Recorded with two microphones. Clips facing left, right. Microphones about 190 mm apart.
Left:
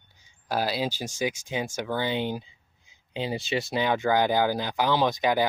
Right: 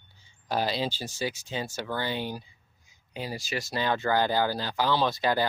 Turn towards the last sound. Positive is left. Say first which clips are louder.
# left 2 dB
turn(degrees=15)  # may be behind; listen again after turning